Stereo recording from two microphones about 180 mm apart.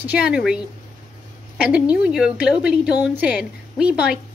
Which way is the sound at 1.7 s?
5° right (ahead or behind).